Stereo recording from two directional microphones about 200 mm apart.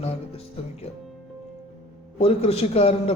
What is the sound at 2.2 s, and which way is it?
Speech, 30° left (ahead or behind).